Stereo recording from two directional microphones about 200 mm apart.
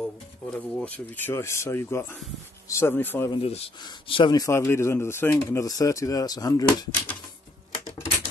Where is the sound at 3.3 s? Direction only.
30° left (ahead or behind).